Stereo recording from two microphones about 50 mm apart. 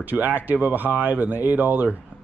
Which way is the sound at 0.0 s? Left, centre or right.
Right.